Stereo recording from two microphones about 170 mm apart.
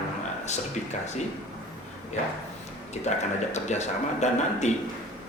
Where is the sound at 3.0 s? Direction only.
40° left (ahead or behind).